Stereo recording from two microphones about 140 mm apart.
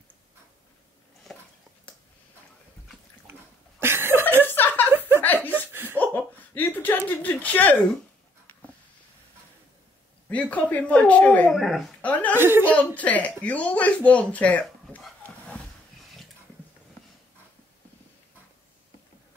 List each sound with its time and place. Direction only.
3.8 s a sound: 15° right (ahead or behind)
4.5 s a sound: 15° left (ahead or behind)
4.9 s chuckle: 15° right (ahead or behind)
5.2 s laughter: 15° left (ahead or behind)
5.7 s chuckle: 15° right (ahead or behind)
5.9 s slap: 10° left (ahead or behind)
7.1 s speech: 10° left (ahead or behind)
10.3 s a woman's voice: 10° left (ahead or behind)
12.4 s speech: 15° right (ahead or behind)
12.7 s speech: 10° left (ahead or behind)